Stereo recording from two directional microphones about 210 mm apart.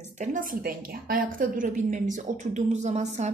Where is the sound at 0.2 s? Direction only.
40° right (ahead or behind).